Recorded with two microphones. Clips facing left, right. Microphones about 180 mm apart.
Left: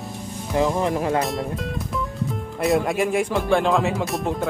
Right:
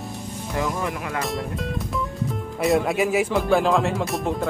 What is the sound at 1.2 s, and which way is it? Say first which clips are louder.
Music: left 1 dB; centre (ahead or behind).